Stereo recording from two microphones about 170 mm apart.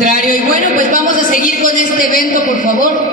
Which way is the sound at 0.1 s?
55° left (ahead or behind).